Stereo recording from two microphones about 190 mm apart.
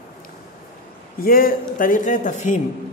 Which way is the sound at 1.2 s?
50° left (ahead or behind).